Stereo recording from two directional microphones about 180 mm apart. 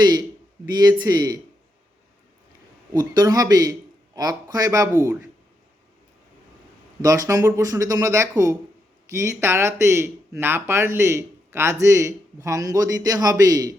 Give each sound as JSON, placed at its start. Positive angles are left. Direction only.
{"t": 0.0, "sound": "a man's voice", "side_deg": -20}
{"t": 2.9, "sound": "speech", "side_deg": -20}
{"t": 7.0, "sound": "speech", "side_deg": -20}